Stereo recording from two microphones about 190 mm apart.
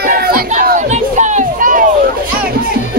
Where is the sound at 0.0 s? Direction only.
50° right (ahead or behind).